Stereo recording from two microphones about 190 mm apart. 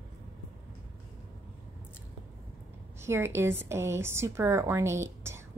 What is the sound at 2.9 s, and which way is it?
A woman's voice, 15° right (ahead or behind).